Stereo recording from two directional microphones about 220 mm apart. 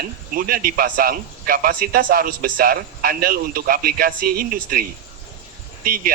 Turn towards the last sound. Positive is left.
turn(degrees=-40)  # may be behind; listen again after turning